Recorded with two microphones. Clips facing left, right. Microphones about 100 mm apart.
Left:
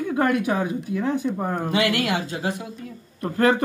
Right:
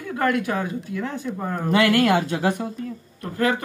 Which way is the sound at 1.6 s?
45° right (ahead or behind).